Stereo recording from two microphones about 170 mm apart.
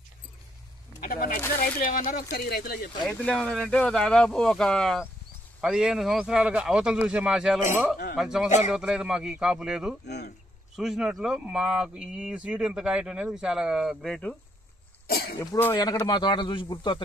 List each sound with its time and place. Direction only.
1.0 s speech: 60° left (ahead or behind)
3.1 s speech: 5° left (ahead or behind)
8.5 s a man's voice: 40° left (ahead or behind)
8.7 s speech: 5° right (ahead or behind)
10.0 s speech: 75° left (ahead or behind)
10.8 s speech: centre (ahead or behind)
15.0 s cough: 65° left (ahead or behind)
15.3 s speech: 15° left (ahead or behind)
16.1 s speech: 25° left (ahead or behind)